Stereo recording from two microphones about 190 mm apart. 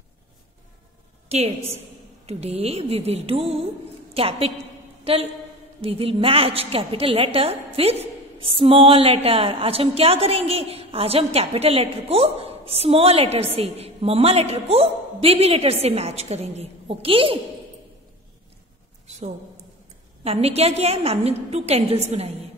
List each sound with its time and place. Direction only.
1.3 s a woman's voice: 35° right (ahead or behind)
20.2 s a woman's voice: 30° right (ahead or behind)